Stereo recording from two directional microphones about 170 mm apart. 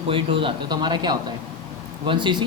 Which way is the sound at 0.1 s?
30° right (ahead or behind).